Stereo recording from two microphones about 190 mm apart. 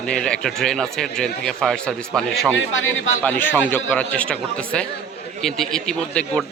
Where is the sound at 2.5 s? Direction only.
90° left.